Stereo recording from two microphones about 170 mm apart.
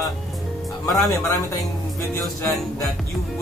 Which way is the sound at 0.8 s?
20° left (ahead or behind).